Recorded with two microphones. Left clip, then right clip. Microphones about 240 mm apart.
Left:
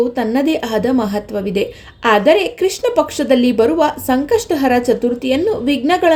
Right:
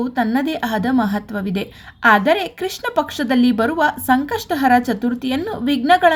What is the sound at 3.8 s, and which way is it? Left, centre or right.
A woman's voice, right.